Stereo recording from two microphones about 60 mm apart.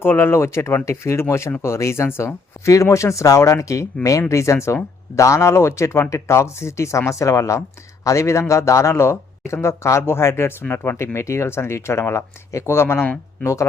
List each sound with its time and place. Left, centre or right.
0.0 s speech: left
2.6 s speech: left